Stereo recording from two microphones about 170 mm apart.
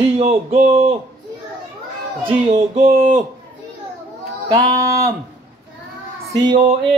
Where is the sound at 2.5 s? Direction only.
40° right (ahead or behind).